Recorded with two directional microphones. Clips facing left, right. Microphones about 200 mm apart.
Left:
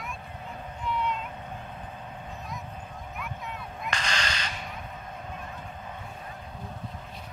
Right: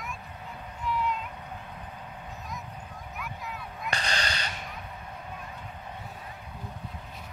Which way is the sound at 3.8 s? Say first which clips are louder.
Even; 35° right (ahead or behind).